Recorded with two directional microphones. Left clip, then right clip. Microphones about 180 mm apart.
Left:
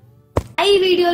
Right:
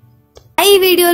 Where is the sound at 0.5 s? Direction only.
65° right (ahead or behind).